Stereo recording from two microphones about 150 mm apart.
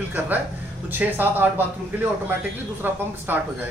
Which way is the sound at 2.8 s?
10° right (ahead or behind).